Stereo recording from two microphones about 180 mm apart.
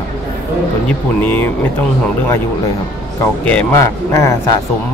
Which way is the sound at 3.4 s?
10° left (ahead or behind).